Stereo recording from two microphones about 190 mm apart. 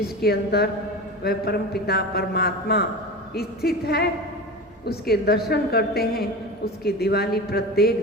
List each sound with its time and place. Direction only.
0.2 s a man's voice: 55° left (ahead or behind)